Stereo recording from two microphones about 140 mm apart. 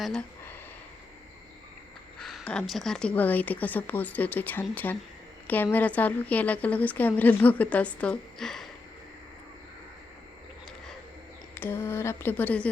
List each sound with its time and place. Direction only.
0.0 s speech: 5° left (ahead or behind)
2.1 s a woman's voice: 5° left (ahead or behind)
11.5 s a woman's voice: 15° left (ahead or behind)